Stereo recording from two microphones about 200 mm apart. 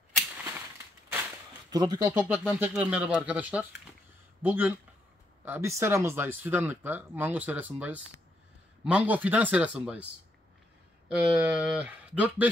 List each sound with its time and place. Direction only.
1.7 s speech: 20° right (ahead or behind)
11.1 s speech: 5° right (ahead or behind)